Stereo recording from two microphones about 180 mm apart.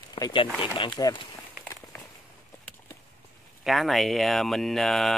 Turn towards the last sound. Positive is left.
turn(degrees=0)  # may be behind; listen again after turning